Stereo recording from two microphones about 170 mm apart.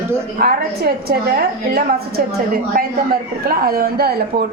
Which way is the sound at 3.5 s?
65° right (ahead or behind).